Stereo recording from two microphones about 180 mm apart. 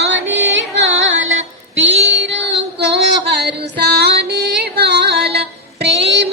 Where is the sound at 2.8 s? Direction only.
70° right (ahead or behind).